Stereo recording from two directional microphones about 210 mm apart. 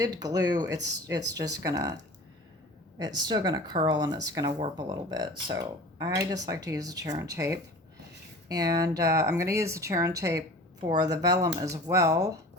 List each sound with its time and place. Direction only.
0.0 s speech: 15° right (ahead or behind)
3.0 s speech: 20° right (ahead or behind)